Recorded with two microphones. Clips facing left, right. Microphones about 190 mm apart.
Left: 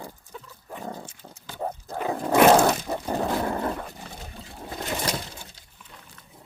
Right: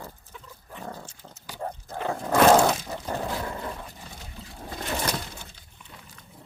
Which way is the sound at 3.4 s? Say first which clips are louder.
Left 6 dB; 60° left (ahead or behind).